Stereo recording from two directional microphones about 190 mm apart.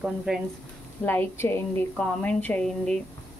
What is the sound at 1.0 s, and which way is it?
A woman's voice, 10° left (ahead or behind).